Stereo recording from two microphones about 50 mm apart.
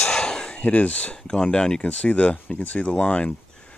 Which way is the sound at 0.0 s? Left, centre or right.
Centre.